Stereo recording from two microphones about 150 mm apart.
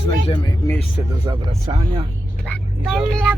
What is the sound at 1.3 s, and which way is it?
Speech, 25° right (ahead or behind).